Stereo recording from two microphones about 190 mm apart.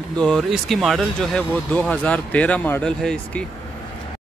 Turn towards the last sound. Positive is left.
turn(degrees=5)  # may be behind; listen again after turning